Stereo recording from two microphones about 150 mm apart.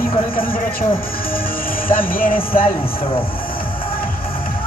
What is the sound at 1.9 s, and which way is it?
Music, 70° left (ahead or behind).